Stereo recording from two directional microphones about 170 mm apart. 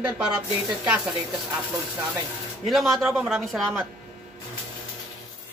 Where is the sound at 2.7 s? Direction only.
Centre (ahead or behind).